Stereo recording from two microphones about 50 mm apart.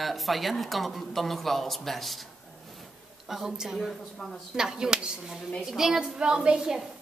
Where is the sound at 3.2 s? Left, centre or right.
Centre.